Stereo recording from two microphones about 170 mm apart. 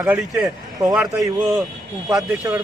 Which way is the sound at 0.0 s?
5° right (ahead or behind).